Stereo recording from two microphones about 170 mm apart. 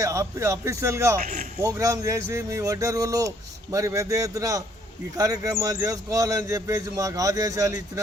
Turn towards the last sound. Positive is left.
turn(degrees=-20)  # may be behind; listen again after turning